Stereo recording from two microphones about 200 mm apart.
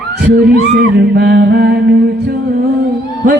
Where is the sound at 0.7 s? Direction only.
60° right (ahead or behind).